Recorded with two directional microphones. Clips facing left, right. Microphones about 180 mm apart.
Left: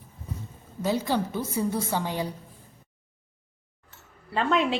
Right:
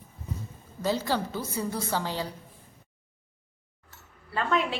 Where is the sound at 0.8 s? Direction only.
20° left (ahead or behind).